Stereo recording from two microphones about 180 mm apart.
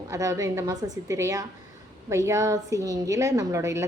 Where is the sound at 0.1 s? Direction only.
20° right (ahead or behind).